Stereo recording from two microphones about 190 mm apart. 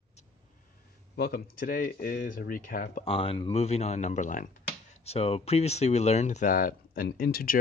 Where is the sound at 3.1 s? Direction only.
30° left (ahead or behind).